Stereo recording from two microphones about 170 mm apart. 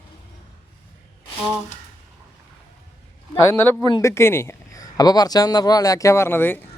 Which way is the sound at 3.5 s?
10° left (ahead or behind).